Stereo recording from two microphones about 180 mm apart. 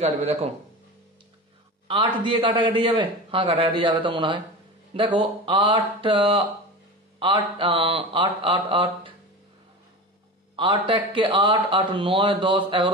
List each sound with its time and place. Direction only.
0.0 s speech: 35° right (ahead or behind)
2.2 s a man's voice: 30° right (ahead or behind)
10.5 s a man's voice: 30° right (ahead or behind)